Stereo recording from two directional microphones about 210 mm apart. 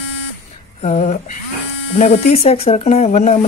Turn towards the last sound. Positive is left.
turn(degrees=30)  # may be behind; listen again after turning